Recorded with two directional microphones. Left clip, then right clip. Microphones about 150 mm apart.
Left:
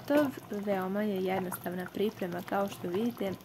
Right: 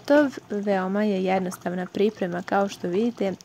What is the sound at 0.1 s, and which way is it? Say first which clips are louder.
Speech: right 9 dB; 50° right (ahead or behind).